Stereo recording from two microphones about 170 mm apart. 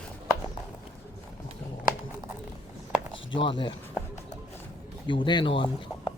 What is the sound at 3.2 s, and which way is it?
Speech, 30° left (ahead or behind).